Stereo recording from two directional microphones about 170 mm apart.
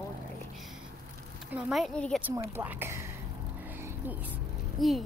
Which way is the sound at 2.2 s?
10° right (ahead or behind).